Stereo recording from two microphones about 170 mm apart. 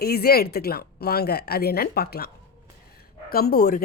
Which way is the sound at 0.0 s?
65° left (ahead or behind).